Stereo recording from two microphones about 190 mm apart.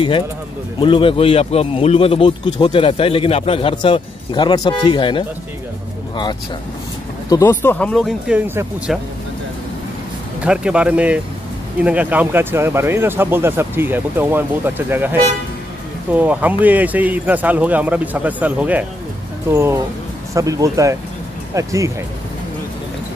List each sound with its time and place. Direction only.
0.7 s speech: 25° left (ahead or behind)
7.2 s speech: 15° left (ahead or behind); by 9.0 s 5° right (ahead or behind)
10.4 s speech: 5° right (ahead or behind)